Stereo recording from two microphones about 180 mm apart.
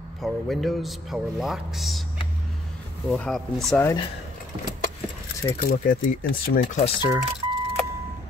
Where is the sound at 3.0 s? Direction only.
5° left (ahead or behind).